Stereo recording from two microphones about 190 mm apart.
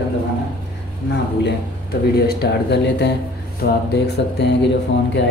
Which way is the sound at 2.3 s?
60° left (ahead or behind).